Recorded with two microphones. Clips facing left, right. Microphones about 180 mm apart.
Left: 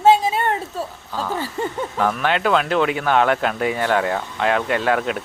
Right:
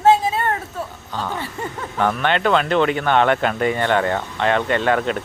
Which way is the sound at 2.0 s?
Centre (ahead or behind).